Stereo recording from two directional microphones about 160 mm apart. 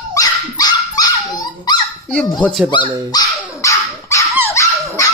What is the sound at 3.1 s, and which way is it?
Dog, 20° left (ahead or behind).